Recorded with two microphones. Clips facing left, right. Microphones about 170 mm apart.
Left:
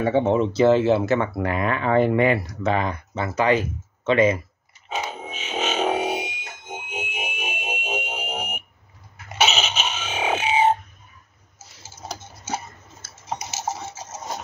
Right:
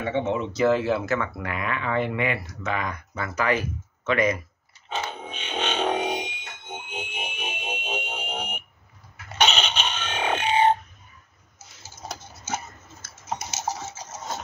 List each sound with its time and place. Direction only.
0.0 s speech: 35° left (ahead or behind)
4.8 s music: 10° left (ahead or behind)
9.4 s a sound: 5° left (ahead or behind)